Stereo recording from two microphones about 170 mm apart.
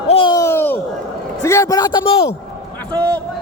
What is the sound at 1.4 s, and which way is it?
Speech, 20° left (ahead or behind).